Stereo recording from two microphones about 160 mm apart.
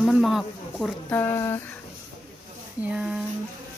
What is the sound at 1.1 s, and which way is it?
Speech, 15° left (ahead or behind).